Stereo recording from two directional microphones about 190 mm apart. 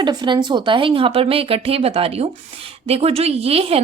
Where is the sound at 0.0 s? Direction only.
25° right (ahead or behind).